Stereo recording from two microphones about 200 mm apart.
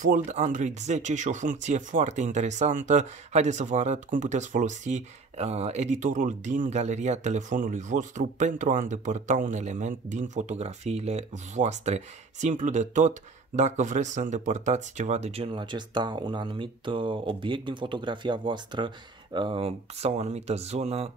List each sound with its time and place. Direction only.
0.0 s speech: 40° right (ahead or behind)